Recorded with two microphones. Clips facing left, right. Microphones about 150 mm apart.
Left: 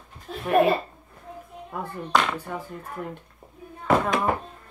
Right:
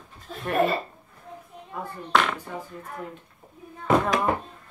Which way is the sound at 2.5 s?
55° left (ahead or behind).